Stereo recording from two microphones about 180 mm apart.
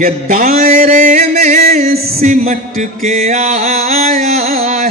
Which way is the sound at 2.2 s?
40° right (ahead or behind).